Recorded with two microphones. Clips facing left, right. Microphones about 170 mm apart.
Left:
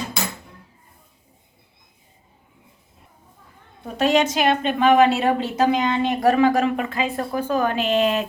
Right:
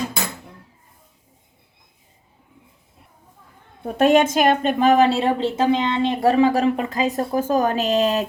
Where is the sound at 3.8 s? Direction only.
55° right (ahead or behind); by 8.3 s 40° right (ahead or behind).